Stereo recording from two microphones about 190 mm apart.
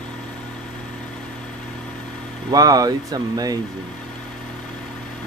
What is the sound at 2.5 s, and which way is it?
Speech, 20° right (ahead or behind).